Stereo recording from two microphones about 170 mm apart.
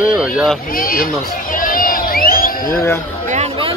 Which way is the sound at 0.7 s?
55° left (ahead or behind).